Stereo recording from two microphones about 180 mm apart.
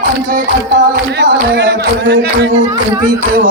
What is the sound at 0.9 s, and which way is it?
Music, 75° right (ahead or behind).